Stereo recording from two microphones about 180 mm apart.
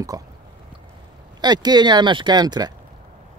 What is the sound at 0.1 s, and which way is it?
Speech, 20° right (ahead or behind).